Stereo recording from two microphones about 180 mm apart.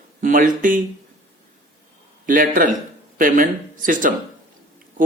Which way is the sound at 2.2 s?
50° right (ahead or behind).